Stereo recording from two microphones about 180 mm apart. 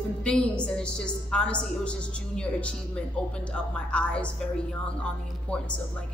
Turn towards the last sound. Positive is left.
turn(degrees=5)  # may be behind; listen again after turning